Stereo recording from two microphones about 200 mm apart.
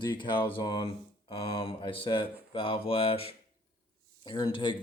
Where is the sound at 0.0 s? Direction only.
25° left (ahead or behind).